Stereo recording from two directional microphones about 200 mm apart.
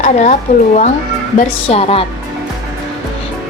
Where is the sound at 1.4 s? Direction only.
30° left (ahead or behind).